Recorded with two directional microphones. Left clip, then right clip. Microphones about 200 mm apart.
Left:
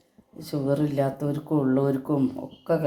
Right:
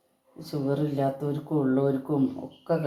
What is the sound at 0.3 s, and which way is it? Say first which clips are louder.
Speech: left 3 dB; 30° left (ahead or behind).